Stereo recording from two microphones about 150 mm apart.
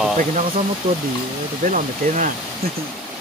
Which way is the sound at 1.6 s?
60° right (ahead or behind).